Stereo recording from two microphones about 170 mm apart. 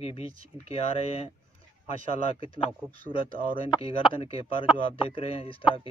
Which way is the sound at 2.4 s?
35° left (ahead or behind).